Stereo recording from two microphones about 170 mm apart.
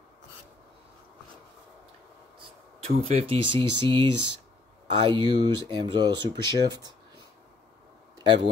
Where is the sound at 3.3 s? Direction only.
30° right (ahead or behind).